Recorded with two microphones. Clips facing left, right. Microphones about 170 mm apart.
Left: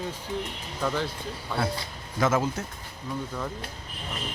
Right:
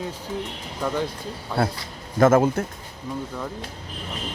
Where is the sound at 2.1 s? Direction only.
50° right (ahead or behind).